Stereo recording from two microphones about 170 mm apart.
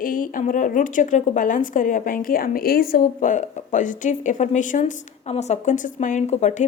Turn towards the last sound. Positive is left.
turn(degrees=45)  # may be behind; listen again after turning